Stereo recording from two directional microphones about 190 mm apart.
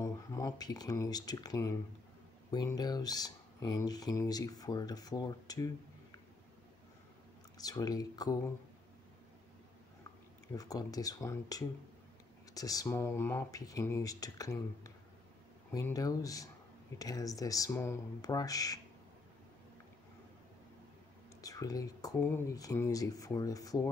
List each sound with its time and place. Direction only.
0.0 s speech: 15° left (ahead or behind)
7.5 s speech: 20° left (ahead or behind)
10.5 s speech: 20° left (ahead or behind)
21.4 s speech: 20° left (ahead or behind)